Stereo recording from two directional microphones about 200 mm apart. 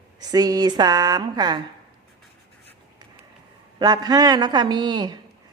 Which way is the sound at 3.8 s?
20° right (ahead or behind).